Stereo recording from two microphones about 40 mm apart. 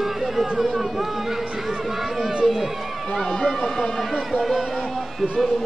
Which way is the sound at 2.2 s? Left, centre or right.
Centre.